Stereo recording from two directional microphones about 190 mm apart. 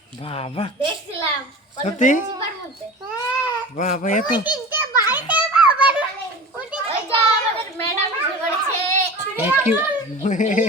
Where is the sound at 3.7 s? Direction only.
40° left (ahead or behind).